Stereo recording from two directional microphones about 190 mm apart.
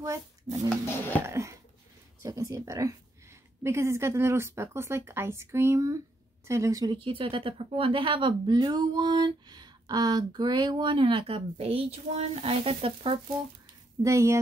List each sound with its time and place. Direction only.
0.8 s speech: 10° left (ahead or behind)
1.2 s a woman's voice: 15° right (ahead or behind)
14.0 s a woman's voice: 15° right (ahead or behind)